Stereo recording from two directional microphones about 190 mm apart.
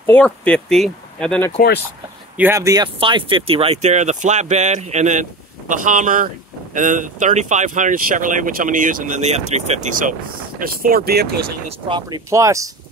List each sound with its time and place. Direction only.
0.0 s speech: 10° left (ahead or behind)
2.3 s speech: 15° right (ahead or behind); by 11.3 s 55° right (ahead or behind)
11.9 s speech: 15° right (ahead or behind)